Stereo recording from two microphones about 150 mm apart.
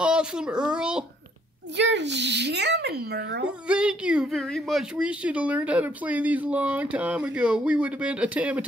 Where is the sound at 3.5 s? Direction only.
5° right (ahead or behind).